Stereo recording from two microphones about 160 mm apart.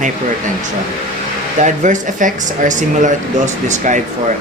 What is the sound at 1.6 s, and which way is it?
Speech, 50° right (ahead or behind).